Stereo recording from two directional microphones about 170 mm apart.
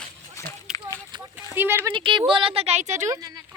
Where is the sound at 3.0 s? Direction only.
20° right (ahead or behind).